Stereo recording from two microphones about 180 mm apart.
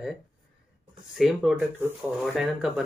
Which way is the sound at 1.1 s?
Centre (ahead or behind).